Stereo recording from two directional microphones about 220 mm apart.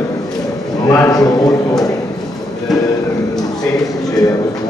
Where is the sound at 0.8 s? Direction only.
15° left (ahead or behind).